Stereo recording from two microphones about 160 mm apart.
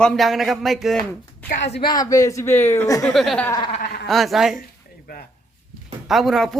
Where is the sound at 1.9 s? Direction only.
20° left (ahead or behind).